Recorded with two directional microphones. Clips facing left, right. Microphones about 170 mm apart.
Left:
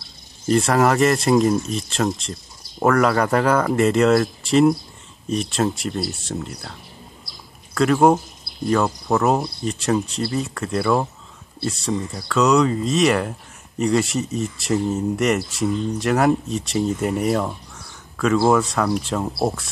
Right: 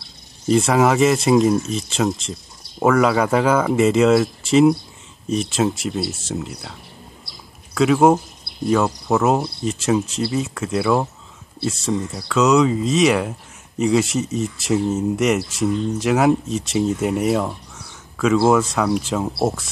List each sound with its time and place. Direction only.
0.0 s speech: centre (ahead or behind)